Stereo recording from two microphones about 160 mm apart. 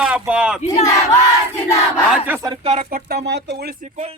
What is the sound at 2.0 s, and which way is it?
Speech, 10° right (ahead or behind).